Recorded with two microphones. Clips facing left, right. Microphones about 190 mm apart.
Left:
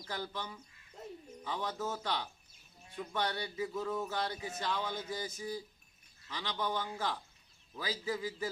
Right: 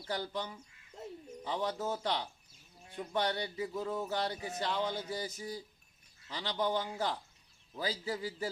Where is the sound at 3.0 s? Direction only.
25° right (ahead or behind).